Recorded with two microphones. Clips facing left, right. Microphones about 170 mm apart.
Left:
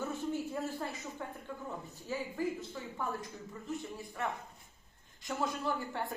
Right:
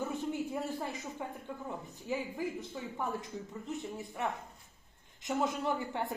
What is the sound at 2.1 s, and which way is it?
Speech, 15° right (ahead or behind).